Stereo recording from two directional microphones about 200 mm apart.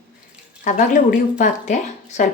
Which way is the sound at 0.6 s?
40° left (ahead or behind).